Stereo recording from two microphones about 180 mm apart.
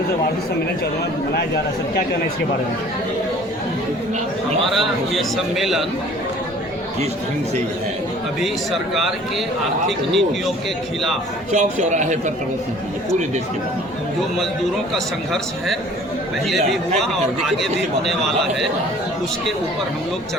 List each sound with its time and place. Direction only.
4.7 s a man's voice: centre (ahead or behind)
8.4 s a man's voice: centre (ahead or behind)
11.5 s a man's voice: 40° right (ahead or behind)
14.9 s a man's voice: centre (ahead or behind)
17.1 s a man's voice: centre (ahead or behind)